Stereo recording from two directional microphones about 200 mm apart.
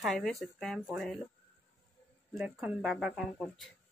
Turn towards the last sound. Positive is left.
turn(degrees=0)  # may be behind; listen again after turning